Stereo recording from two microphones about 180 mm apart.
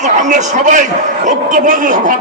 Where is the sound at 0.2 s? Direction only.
40° right (ahead or behind).